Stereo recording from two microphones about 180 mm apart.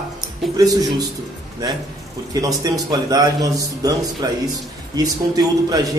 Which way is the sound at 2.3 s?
20° right (ahead or behind).